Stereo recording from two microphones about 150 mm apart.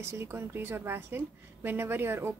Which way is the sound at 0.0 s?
15° right (ahead or behind).